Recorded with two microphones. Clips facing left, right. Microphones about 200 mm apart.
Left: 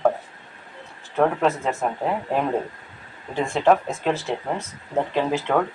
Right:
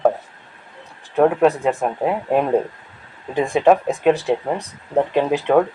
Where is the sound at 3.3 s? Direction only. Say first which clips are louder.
Right 4 dB; 15° right (ahead or behind).